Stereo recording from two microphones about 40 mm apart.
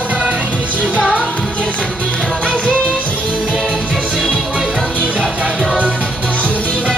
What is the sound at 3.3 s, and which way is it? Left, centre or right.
Music, right.